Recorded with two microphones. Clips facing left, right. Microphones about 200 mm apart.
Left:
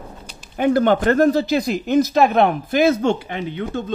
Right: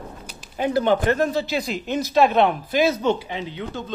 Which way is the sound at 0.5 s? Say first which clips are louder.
Left 4 dB; 55° left (ahead or behind).